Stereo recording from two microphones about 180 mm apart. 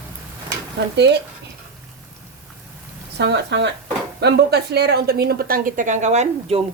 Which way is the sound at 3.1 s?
70° right (ahead or behind).